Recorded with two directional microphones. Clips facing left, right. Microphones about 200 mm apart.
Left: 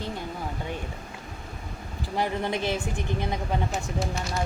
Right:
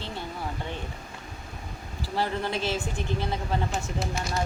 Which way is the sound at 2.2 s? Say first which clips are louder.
Left 1 dB; 15° left (ahead or behind).